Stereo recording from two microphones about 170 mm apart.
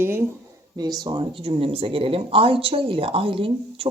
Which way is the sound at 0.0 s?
15° right (ahead or behind).